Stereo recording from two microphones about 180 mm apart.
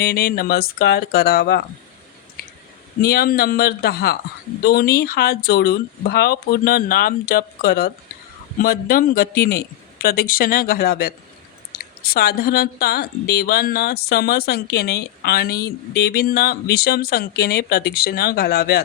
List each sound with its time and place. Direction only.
0.0 s speech: 55° left (ahead or behind)
3.0 s speech: 55° left (ahead or behind)